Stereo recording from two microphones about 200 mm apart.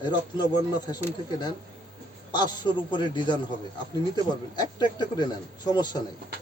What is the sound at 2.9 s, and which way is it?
A man's voice, 25° left (ahead or behind).